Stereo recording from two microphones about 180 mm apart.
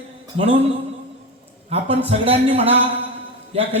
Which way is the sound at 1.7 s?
35° right (ahead or behind).